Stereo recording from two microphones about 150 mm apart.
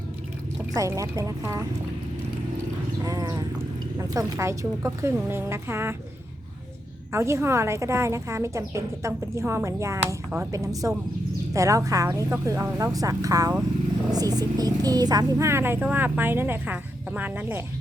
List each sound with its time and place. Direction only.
0.7 s speech: 20° right (ahead or behind)
3.0 s a woman's voice: 25° right (ahead or behind)
7.1 s a woman's voice: 20° right (ahead or behind)